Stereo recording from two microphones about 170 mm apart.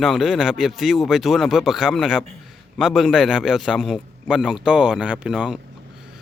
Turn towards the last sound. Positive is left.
turn(degrees=-5)  # may be behind; listen again after turning